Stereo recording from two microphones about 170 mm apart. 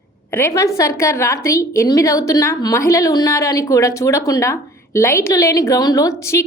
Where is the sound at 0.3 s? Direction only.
15° left (ahead or behind).